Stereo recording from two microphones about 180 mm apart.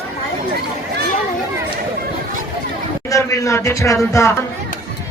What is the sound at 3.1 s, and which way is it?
A woman's voice, 15° left (ahead or behind).